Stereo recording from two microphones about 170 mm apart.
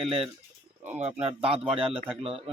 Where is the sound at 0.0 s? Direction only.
30° right (ahead or behind).